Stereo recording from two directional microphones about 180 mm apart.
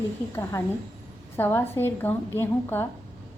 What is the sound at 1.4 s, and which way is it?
A woman's voice, 10° left (ahead or behind).